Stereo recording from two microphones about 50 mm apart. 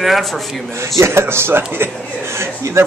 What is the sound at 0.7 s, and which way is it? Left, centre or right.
A man's voice, right.